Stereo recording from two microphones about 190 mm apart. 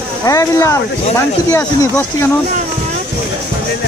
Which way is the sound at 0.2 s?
15° left (ahead or behind).